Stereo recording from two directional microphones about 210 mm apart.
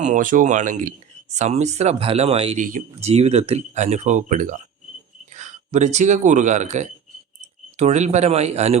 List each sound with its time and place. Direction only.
0.0 s speech: 35° right (ahead or behind)